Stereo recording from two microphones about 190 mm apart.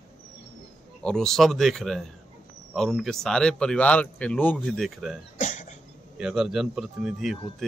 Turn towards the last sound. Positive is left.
turn(degrees=0)  # may be behind; listen again after turning